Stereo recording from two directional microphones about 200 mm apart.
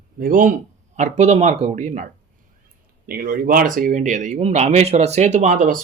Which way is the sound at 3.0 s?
50° right (ahead or behind).